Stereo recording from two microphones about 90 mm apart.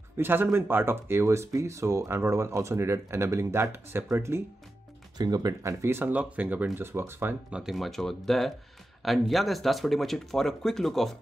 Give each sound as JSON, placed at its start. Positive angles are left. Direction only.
{"t": 0.2, "sound": "speech", "side_deg": -25}
{"t": 5.1, "sound": "speech", "side_deg": -50}
{"t": 7.5, "sound": "speech", "side_deg": -5}